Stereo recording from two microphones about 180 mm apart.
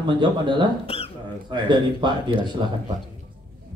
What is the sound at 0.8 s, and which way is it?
Speech, 30° left (ahead or behind).